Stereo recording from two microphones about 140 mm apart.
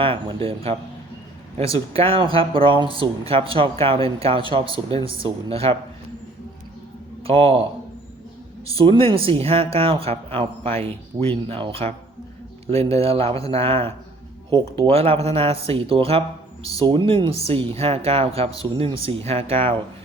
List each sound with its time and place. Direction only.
0.0 s speech: 40° right (ahead or behind)
1.9 s speech: 40° right (ahead or behind)
7.3 s speech: 40° right (ahead or behind)
8.7 s speech: 40° right (ahead or behind)